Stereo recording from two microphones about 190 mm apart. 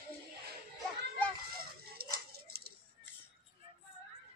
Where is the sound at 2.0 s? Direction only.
55° right (ahead or behind).